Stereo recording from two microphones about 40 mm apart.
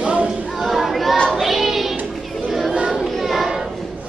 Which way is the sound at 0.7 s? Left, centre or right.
Centre.